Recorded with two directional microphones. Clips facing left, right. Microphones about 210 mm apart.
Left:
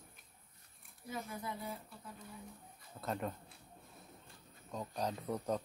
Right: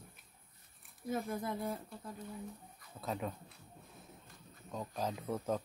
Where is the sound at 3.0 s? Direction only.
Centre (ahead or behind).